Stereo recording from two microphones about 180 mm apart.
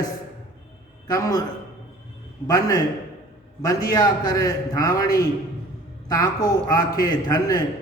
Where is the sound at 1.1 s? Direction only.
20° left (ahead or behind).